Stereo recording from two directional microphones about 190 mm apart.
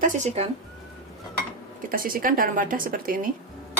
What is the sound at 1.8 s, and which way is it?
Speech, 50° right (ahead or behind).